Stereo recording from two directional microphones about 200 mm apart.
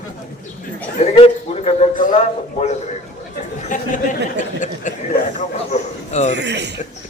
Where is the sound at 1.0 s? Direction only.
35° left (ahead or behind).